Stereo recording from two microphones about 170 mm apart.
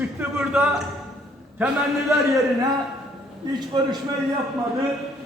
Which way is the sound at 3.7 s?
25° right (ahead or behind).